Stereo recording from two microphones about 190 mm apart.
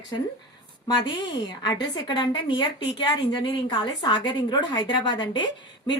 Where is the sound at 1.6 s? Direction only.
20° left (ahead or behind).